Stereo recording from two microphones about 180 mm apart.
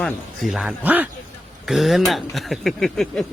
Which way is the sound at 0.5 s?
5° right (ahead or behind).